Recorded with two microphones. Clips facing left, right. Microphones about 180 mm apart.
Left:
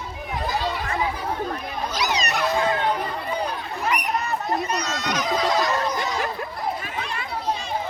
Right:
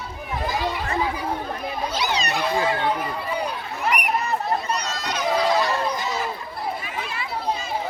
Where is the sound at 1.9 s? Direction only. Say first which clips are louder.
Left 1 dB; 30° right (ahead or behind).